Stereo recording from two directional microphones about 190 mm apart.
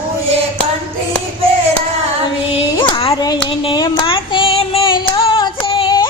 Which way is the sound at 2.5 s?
25° left (ahead or behind).